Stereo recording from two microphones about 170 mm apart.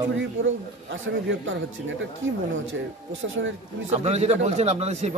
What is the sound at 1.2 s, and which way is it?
Speech, 90° right.